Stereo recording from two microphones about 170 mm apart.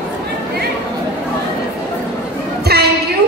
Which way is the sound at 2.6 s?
70° right (ahead or behind).